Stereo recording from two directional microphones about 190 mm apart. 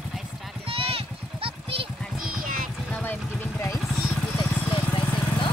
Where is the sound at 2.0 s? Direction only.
Centre (ahead or behind).